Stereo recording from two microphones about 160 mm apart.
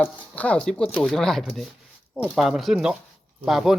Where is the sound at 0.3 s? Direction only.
10° left (ahead or behind).